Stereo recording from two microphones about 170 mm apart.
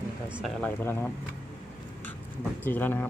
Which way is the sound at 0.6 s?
10° left (ahead or behind).